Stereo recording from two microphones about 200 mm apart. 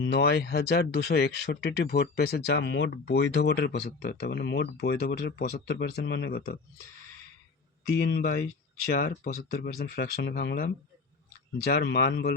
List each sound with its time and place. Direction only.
0.0 s speech: 55° left (ahead or behind)
7.9 s speech: 50° left (ahead or behind)
11.7 s speech: 50° left (ahead or behind)